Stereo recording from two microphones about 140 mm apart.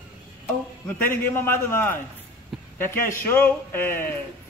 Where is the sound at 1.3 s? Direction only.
15° left (ahead or behind).